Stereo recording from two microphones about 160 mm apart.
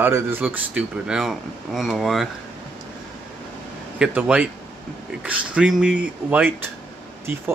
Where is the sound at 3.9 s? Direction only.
10° right (ahead or behind).